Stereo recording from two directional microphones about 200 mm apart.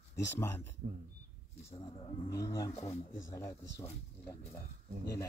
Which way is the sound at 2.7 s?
30° left (ahead or behind).